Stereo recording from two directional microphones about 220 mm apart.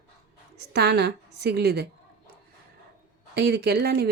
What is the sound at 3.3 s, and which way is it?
Speech, 45° right (ahead or behind).